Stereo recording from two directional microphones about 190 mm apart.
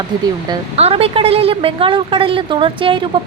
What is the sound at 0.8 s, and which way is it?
A woman's voice, 30° right (ahead or behind).